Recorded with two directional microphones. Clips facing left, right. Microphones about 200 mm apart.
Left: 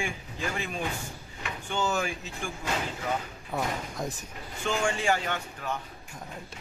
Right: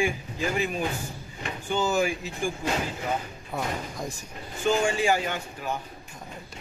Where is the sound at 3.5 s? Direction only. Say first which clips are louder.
Even; centre (ahead or behind).